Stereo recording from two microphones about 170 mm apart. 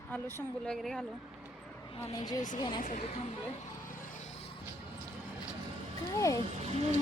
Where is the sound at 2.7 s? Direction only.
50° left (ahead or behind).